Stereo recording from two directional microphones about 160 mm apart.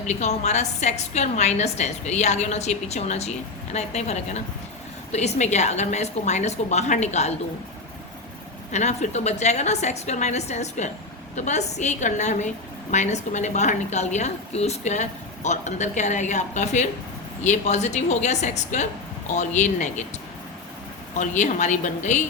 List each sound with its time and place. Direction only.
0.1 s a woman's voice: 45° left (ahead or behind)
8.7 s a woman's voice: 45° left (ahead or behind)
21.2 s a woman's voice: 50° left (ahead or behind)